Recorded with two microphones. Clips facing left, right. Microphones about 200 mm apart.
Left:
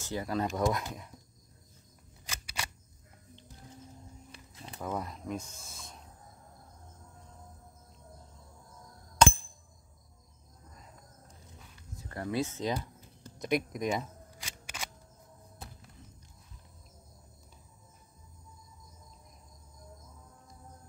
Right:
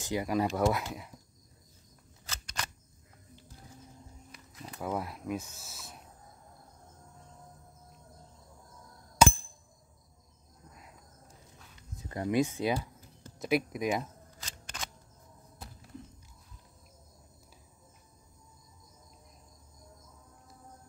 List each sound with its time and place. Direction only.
0.0 s speech: 15° right (ahead or behind)
2.2 s single-lens reflex camera: 10° left (ahead or behind)
4.3 s a sound: 30° left (ahead or behind)
4.7 s speech: 5° right (ahead or behind)
9.2 s a sound: 5° right (ahead or behind)
12.0 s speech: 20° right (ahead or behind)
14.4 s single-lens reflex camera: 10° left (ahead or behind)